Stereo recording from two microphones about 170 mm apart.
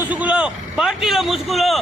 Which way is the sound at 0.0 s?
10° right (ahead or behind).